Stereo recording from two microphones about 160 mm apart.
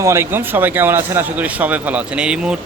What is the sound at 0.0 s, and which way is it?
Speech, 15° right (ahead or behind).